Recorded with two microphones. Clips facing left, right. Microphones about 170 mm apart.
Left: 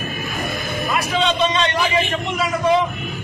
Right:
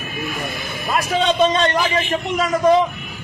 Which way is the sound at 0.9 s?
45° right (ahead or behind).